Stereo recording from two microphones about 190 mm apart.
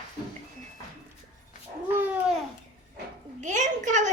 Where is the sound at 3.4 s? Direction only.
40° right (ahead or behind).